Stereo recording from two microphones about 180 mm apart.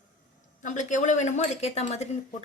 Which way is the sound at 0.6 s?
45° left (ahead or behind).